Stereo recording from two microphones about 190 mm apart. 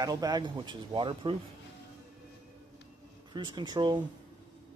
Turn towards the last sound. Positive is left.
turn(degrees=-25)  # may be behind; listen again after turning